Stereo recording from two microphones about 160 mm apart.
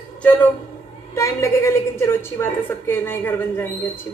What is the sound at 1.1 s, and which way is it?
A man's voice, 20° left (ahead or behind).